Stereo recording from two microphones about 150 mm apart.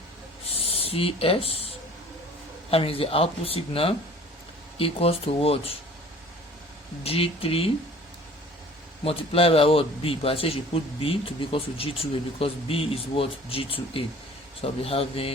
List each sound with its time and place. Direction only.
0.4 s a sound: 40° left (ahead or behind)
2.6 s a man's voice: 40° left (ahead or behind)
7.0 s a man's voice: 40° left (ahead or behind)
9.0 s a man's voice: 40° left (ahead or behind)